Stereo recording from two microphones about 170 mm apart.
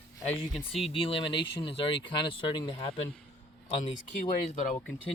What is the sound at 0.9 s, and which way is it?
Speech, 35° left (ahead or behind).